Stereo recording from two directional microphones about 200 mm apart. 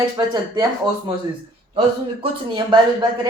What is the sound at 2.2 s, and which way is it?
Speech, 25° right (ahead or behind).